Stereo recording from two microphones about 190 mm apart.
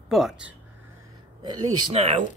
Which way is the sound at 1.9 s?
35° right (ahead or behind).